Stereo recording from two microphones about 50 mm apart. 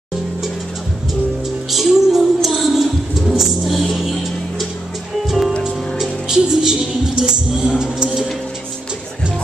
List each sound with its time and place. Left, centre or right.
1.7 s a sound: centre
5.6 s music: centre
7.8 s speech: centre